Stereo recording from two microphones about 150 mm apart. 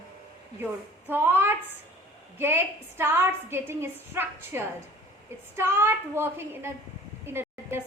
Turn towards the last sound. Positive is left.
turn(degrees=-15)  # may be behind; listen again after turning